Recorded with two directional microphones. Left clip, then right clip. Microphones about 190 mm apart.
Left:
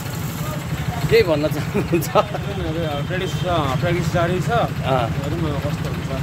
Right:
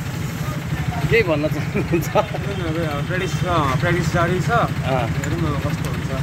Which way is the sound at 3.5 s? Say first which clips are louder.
Right 1 dB; centre (ahead or behind).